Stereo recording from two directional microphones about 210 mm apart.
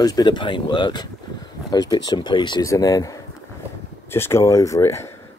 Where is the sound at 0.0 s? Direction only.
20° left (ahead or behind).